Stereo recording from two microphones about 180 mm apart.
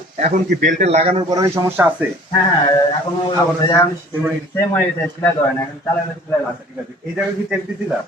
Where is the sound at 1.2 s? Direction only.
20° right (ahead or behind).